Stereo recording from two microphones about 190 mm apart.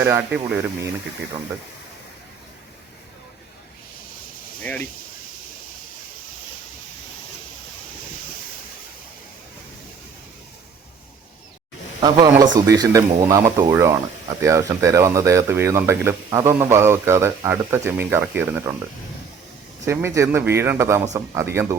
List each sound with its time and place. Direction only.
0.0 s speech: 10° right (ahead or behind)
4.6 s speech: 10° left (ahead or behind)
11.9 s speech: 20° right (ahead or behind)
19.8 s speech: 15° right (ahead or behind)